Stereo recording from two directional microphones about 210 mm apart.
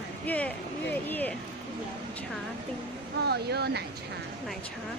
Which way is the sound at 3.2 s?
50° right (ahead or behind).